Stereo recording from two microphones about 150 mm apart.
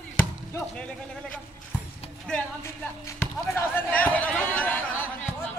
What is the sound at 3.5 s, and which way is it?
Chatter, 10° left (ahead or behind).